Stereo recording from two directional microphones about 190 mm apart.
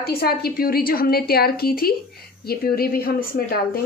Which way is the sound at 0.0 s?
55° left (ahead or behind).